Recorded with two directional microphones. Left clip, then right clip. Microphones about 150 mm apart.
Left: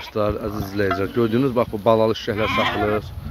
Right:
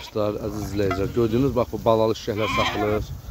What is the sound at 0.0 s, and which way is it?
Stir, 20° right (ahead or behind).